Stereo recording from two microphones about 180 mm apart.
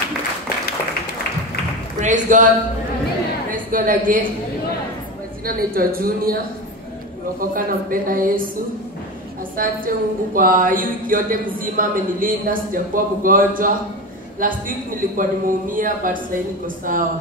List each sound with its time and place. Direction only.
2.0 s speech: 45° right (ahead or behind)
3.5 s a woman's voice: 50° right (ahead or behind)
5.4 s speech: 55° right (ahead or behind)
7.3 s a woman's voice: 50° right (ahead or behind)
9.6 s a woman's voice: 50° right (ahead or behind)